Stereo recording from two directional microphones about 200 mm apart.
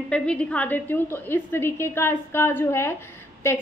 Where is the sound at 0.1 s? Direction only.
5° left (ahead or behind).